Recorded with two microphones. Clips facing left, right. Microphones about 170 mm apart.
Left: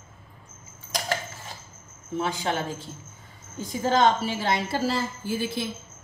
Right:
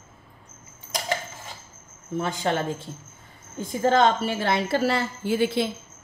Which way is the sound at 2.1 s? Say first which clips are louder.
Right 2 dB; 50° right (ahead or behind).